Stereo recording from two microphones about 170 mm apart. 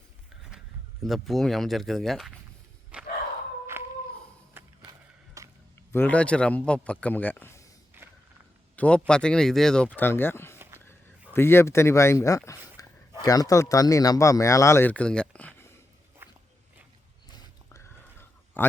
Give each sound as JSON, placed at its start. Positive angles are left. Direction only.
{"t": 1.0, "sound": "speech", "side_deg": 0}
{"t": 2.9, "sound": "a sound", "side_deg": -5}
{"t": 4.6, "sound": "skateboard", "side_deg": -10}
{"t": 4.9, "sound": "a sound", "side_deg": -20}
{"t": 5.9, "sound": "speech", "side_deg": 10}
{"t": 7.9, "sound": "vehicle", "side_deg": -15}
{"t": 8.7, "sound": "speech", "side_deg": 5}
{"t": 12.8, "sound": "a sound", "side_deg": 20}
{"t": 13.2, "sound": "speech", "side_deg": 20}
{"t": 16.2, "sound": "biting", "side_deg": -10}
{"t": 17.3, "sound": "whispering", "side_deg": 15}